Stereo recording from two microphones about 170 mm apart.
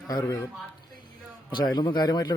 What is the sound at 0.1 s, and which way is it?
Speech, 25° left (ahead or behind).